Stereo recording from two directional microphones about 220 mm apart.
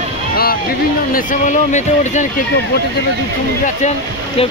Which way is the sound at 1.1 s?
35° left (ahead or behind).